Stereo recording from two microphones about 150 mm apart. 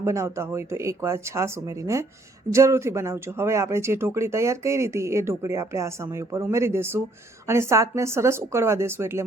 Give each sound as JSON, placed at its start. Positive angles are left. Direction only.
{"t": 0.0, "sound": "speech", "side_deg": -20}